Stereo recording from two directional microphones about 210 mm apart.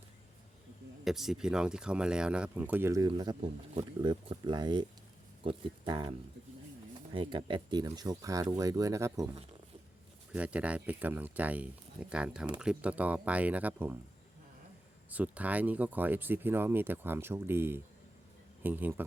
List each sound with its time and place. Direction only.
1.0 s speech: centre (ahead or behind); by 6.1 s 20° right (ahead or behind)
7.1 s speech: 25° right (ahead or behind)
15.1 s speech: 5° right (ahead or behind)